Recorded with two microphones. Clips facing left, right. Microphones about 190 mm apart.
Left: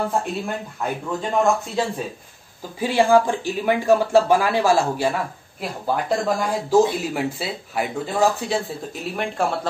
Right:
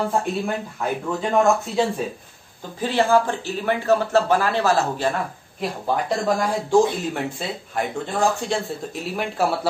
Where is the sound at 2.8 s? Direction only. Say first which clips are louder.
Left 2 dB; 10° left (ahead or behind).